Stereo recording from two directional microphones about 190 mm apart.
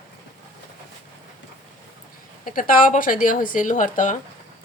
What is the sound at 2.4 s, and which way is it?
A woman's voice, 45° left (ahead or behind).